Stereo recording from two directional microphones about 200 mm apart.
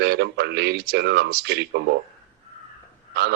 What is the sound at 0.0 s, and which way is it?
A man's voice, 55° right (ahead or behind).